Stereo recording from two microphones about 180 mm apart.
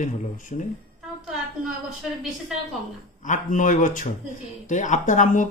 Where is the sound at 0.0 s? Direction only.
45° left (ahead or behind).